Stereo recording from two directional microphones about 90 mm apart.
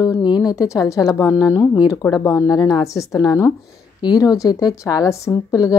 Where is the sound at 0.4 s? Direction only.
40° left (ahead or behind).